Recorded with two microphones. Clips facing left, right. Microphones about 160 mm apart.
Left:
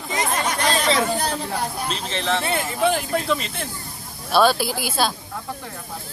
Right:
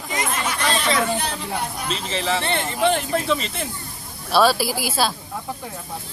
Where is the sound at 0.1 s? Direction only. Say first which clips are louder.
Left 2 dB; 35° left (ahead or behind).